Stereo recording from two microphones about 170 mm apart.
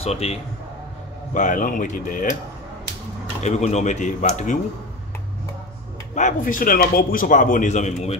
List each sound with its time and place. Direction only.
0.0 s a man's voice: 40° left (ahead or behind)
1.3 s a man's voice: 50° left (ahead or behind)
3.4 s a man's voice: 40° left (ahead or behind)
6.1 s a man's voice: 50° left (ahead or behind)